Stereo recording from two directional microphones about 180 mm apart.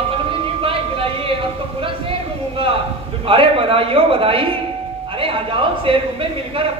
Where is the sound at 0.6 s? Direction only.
30° right (ahead or behind).